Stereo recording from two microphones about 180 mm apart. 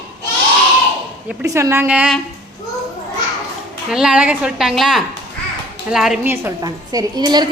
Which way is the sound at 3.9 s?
5° right (ahead or behind).